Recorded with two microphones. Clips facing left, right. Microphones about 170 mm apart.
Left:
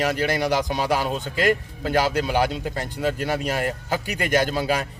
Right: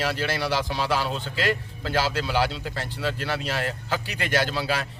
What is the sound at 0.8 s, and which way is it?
A man's voice, 45° left (ahead or behind).